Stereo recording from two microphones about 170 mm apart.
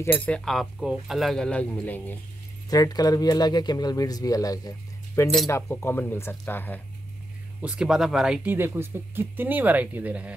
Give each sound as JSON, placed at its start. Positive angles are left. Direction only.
{"t": 0.0, "sound": "speech", "side_deg": 10}
{"t": 2.7, "sound": "speech", "side_deg": 20}
{"t": 7.6, "sound": "speech", "side_deg": -5}